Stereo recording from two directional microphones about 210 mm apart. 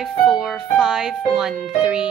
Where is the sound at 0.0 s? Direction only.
Centre (ahead or behind).